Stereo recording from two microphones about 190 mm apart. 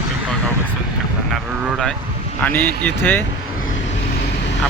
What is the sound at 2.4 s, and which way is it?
Speech, 10° left (ahead or behind).